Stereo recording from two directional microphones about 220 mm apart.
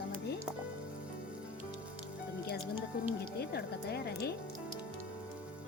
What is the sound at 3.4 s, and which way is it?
Speech, 45° left (ahead or behind).